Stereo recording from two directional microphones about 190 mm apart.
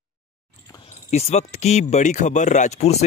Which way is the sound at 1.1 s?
35° left (ahead or behind).